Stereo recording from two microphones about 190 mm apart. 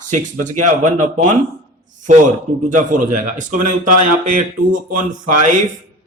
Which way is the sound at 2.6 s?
45° right (ahead or behind).